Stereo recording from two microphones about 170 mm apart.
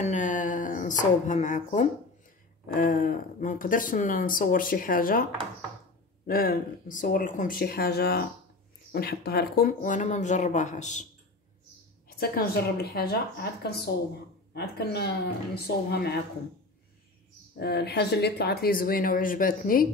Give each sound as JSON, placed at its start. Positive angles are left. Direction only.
{"t": 0.0, "sound": "speech", "side_deg": 45}
{"t": 2.7, "sound": "speech", "side_deg": 55}
{"t": 6.2, "sound": "speech", "side_deg": 60}
{"t": 12.1, "sound": "a woman's voice", "side_deg": 60}
{"t": 17.6, "sound": "speech", "side_deg": 70}